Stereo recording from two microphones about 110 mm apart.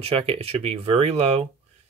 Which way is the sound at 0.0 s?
65° right (ahead or behind).